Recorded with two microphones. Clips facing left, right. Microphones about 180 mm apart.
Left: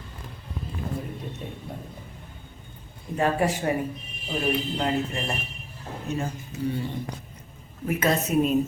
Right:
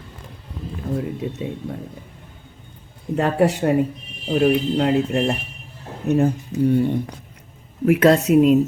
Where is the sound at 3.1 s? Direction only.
70° right (ahead or behind); by 7.0 s 55° right (ahead or behind).